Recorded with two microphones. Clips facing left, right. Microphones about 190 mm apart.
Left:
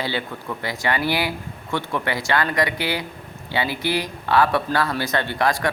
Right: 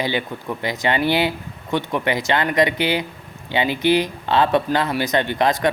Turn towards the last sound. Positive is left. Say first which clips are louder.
# right 3 dB
turn(degrees=-20)  # may be behind; listen again after turning